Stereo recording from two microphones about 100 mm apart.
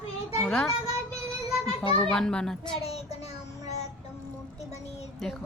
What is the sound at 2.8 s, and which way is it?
Speech, 90° left.